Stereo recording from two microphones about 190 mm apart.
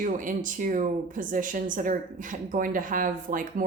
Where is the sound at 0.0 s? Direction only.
45° right (ahead or behind).